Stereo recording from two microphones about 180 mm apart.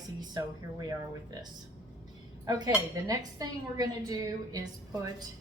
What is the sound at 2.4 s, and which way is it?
Dishes, 20° right (ahead or behind).